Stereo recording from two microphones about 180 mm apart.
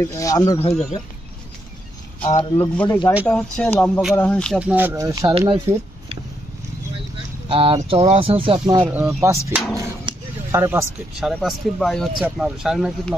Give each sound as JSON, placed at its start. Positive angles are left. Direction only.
{"t": 0.1, "sound": "speech", "side_deg": 15}
{"t": 0.6, "sound": "a man's voice", "side_deg": 35}
{"t": 2.2, "sound": "a man's voice", "side_deg": 30}
{"t": 2.6, "sound": "speech", "side_deg": 15}
{"t": 3.3, "sound": "speech", "side_deg": 5}
{"t": 4.6, "sound": "speech", "side_deg": -10}
{"t": 7.4, "sound": "speech", "side_deg": -30}
{"t": 8.8, "sound": "speech", "side_deg": -10}
{"t": 9.8, "sound": "a sound", "side_deg": -15}
{"t": 11.3, "sound": "speech", "side_deg": 0}